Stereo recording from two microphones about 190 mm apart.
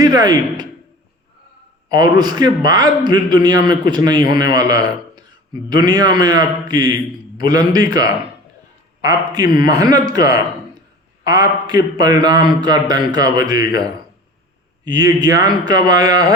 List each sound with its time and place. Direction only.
0.0 s a man's voice: 20° right (ahead or behind)
1.9 s a man's voice: 20° right (ahead or behind)